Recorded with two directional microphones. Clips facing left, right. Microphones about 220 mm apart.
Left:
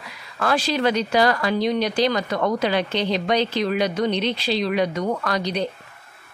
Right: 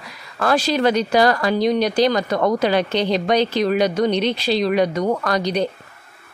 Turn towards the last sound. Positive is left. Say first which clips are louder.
# right 4 dB
turn(degrees=-40)  # may be behind; listen again after turning